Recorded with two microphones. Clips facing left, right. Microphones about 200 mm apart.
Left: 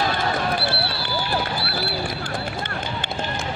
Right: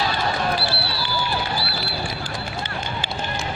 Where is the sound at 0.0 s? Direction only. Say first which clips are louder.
Even; 55° left (ahead or behind).